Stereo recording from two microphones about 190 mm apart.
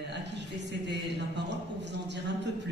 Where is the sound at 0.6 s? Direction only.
65° right (ahead or behind).